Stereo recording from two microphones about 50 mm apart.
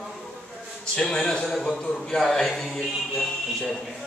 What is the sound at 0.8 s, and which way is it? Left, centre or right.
A man's voice, centre.